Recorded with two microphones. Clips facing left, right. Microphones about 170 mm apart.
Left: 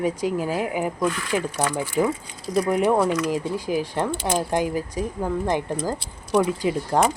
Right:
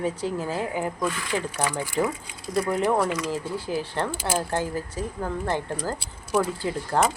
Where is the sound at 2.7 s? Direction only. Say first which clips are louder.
Left 4 dB; 15° left (ahead or behind).